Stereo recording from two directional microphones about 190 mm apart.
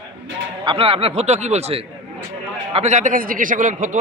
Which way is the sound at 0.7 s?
30° right (ahead or behind).